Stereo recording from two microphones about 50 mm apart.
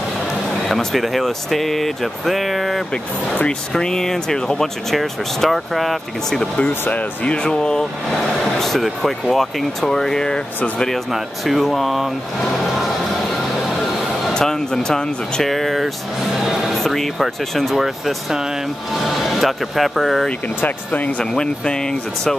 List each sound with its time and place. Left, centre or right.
0.7 s speech: centre
3.7 s speech: centre
4.9 s speech: centre
6.9 s speech: left
7.3 s speech: centre
11.1 s speech: centre
14.4 s speech: centre
15.5 s speech: centre
17.7 s speech: centre
20.6 s speech: left
21.2 s speech: centre